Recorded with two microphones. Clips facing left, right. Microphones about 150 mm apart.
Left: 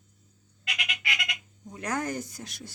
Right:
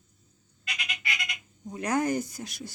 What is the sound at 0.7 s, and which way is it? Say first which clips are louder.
Frog: left 1 dB; 90° left.